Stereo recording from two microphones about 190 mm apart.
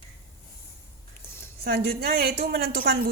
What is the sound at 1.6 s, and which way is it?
A woman's voice, 55° right (ahead or behind).